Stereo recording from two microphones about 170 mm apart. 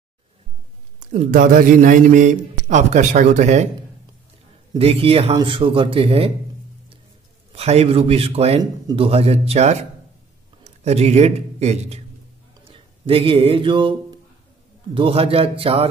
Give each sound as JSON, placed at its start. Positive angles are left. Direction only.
{"t": 0.9, "sound": "a man's voice", "side_deg": -45}
{"t": 4.7, "sound": "speech", "side_deg": -35}
{"t": 7.5, "sound": "speech", "side_deg": -35}
{"t": 15.0, "sound": "speech", "side_deg": -35}